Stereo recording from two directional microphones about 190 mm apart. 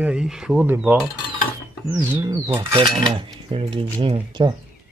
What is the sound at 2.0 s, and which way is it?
Speech, 20° right (ahead or behind).